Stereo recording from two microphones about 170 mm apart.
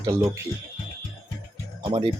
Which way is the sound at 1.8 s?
30° right (ahead or behind).